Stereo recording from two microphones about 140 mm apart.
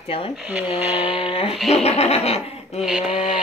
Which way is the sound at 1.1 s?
45° left (ahead or behind).